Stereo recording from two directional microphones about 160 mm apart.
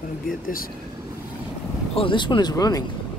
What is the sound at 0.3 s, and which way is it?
Speech, 60° left (ahead or behind).